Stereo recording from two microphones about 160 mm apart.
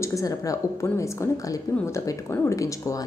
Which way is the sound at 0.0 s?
20° left (ahead or behind).